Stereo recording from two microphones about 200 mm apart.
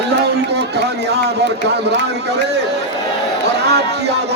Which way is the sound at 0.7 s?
55° right (ahead or behind).